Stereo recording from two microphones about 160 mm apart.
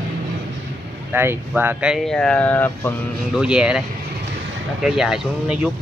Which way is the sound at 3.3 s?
5° right (ahead or behind).